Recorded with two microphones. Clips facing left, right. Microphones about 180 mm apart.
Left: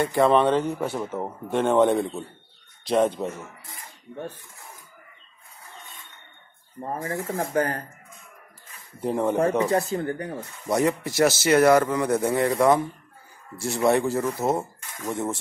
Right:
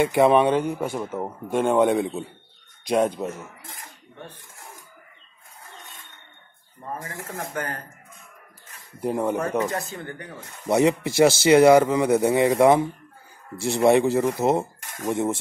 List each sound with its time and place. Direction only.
0.0 s speech: 15° right (ahead or behind)
7.2 s speech: 25° left (ahead or behind)
7.5 s speech: 35° left (ahead or behind)
9.0 s speech: 5° right (ahead or behind)
9.7 s speech: 35° left (ahead or behind)
10.7 s speech: 25° right (ahead or behind)
11.4 s speech: 15° right (ahead or behind)